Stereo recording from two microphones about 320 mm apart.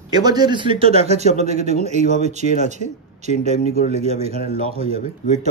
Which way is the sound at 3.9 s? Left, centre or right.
Centre.